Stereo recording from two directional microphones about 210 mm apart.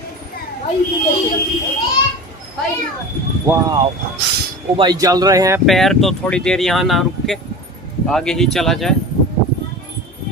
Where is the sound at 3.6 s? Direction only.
20° right (ahead or behind).